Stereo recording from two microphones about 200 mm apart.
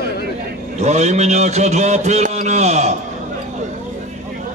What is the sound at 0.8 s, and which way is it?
A man's voice, 35° right (ahead or behind).